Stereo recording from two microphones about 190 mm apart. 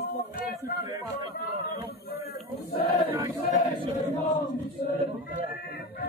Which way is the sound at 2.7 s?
50° left (ahead or behind).